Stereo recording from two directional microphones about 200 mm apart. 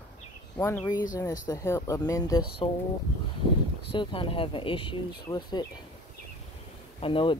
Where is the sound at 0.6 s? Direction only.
15° left (ahead or behind).